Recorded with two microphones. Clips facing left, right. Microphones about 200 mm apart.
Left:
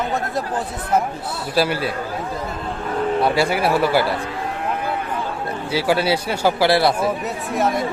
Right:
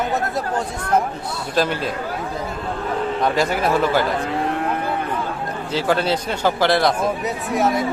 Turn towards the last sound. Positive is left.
turn(degrees=0)  # may be behind; listen again after turning